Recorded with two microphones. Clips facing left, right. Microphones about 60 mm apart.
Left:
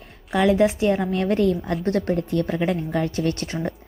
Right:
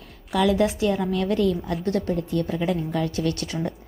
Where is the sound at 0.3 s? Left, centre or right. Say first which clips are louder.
Left 2 dB; left.